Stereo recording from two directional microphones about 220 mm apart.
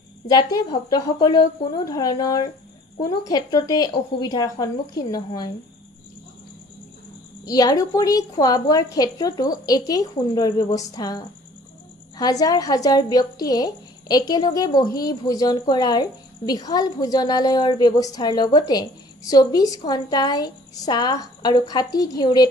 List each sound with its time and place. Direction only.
0.3 s speech: 15° left (ahead or behind)
7.4 s speech: 15° left (ahead or behind)